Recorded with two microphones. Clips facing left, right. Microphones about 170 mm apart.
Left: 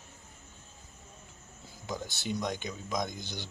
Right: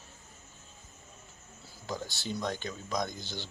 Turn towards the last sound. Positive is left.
turn(degrees=20)  # may be behind; listen again after turning